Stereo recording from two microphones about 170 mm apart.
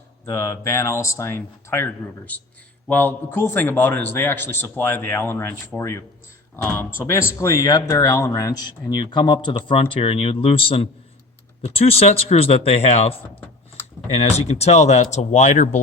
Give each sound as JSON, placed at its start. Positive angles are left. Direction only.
{"t": 0.3, "sound": "a man's voice", "side_deg": 15}